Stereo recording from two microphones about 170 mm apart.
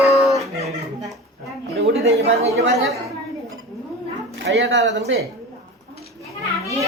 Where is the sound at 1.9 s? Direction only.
40° right (ahead or behind).